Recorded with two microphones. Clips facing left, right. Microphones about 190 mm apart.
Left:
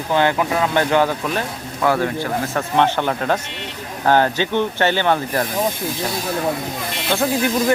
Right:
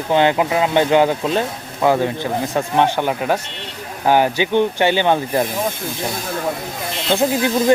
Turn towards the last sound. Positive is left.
turn(degrees=-20)  # may be behind; listen again after turning